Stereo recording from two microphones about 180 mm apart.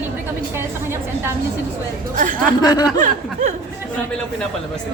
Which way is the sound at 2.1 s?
50° right (ahead or behind).